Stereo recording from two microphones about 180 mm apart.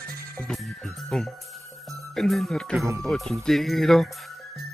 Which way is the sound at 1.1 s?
5° left (ahead or behind).